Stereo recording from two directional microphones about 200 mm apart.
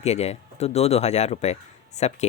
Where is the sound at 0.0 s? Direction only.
35° left (ahead or behind).